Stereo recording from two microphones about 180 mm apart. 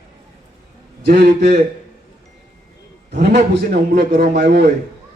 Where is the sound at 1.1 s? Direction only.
65° right (ahead or behind).